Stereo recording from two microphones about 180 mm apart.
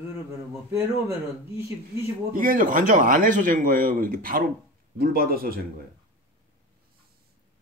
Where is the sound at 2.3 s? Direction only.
50° right (ahead or behind).